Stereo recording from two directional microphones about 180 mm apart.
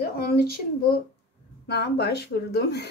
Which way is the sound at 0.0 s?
60° left (ahead or behind).